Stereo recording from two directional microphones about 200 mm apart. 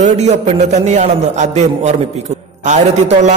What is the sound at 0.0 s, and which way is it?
A man's voice, 35° right (ahead or behind).